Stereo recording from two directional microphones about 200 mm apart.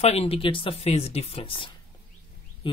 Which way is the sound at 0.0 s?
30° left (ahead or behind).